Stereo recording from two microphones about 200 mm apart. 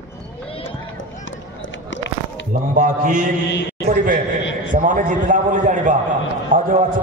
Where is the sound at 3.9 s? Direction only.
40° right (ahead or behind).